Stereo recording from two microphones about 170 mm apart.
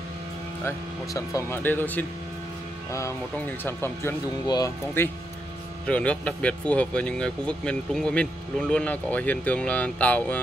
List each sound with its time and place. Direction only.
0.7 s speech: 20° left (ahead or behind)